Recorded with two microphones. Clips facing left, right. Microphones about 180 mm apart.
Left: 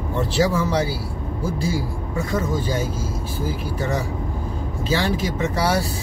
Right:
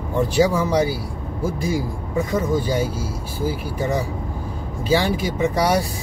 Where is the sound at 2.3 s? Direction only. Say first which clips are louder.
Right 2 dB; 10° right (ahead or behind).